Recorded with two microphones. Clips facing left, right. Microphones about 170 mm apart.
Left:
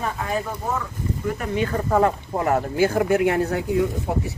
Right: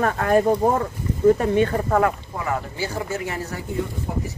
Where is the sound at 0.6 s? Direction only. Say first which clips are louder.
Right 7 dB; 50° right (ahead or behind).